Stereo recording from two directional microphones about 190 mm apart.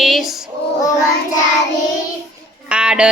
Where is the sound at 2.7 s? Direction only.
5° right (ahead or behind).